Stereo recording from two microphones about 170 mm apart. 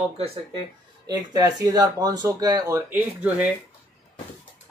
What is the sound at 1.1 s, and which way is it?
Speech, 25° right (ahead or behind).